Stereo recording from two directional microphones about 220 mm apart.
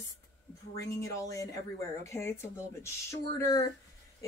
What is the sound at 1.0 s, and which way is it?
Speech, 15° left (ahead or behind).